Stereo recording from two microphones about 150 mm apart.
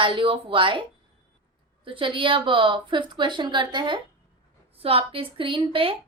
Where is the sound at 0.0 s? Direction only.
35° right (ahead or behind).